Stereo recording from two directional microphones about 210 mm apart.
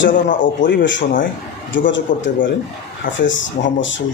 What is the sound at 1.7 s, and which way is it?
Speech, 60° left (ahead or behind).